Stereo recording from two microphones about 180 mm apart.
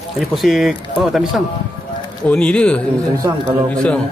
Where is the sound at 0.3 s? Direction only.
Centre (ahead or behind).